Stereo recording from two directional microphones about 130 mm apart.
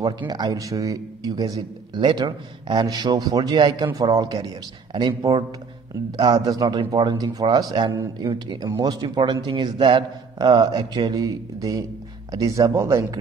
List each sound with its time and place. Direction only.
0.3 s a man's voice: 30° right (ahead or behind)